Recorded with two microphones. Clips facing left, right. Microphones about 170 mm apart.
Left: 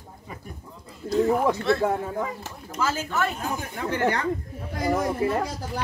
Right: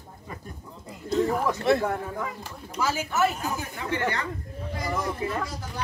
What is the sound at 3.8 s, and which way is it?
Speech, 45° left (ahead or behind).